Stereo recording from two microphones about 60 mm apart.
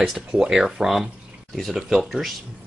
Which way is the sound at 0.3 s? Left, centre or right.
Centre.